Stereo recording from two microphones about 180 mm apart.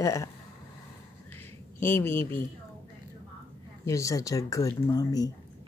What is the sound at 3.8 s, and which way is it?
Speech, 15° left (ahead or behind).